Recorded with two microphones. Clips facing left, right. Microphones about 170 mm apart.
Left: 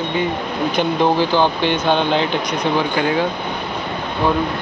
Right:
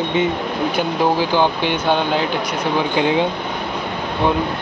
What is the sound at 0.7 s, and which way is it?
Speech, 10° right (ahead or behind).